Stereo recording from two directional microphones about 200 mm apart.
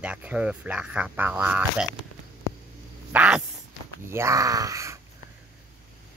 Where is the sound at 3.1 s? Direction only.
5° right (ahead or behind).